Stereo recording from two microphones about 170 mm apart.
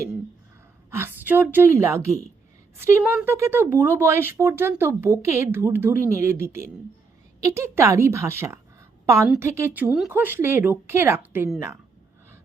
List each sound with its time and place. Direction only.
0.9 s speech: 15° right (ahead or behind)